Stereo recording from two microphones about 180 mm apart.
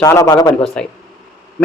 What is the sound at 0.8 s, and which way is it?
Speech, 5° left (ahead or behind).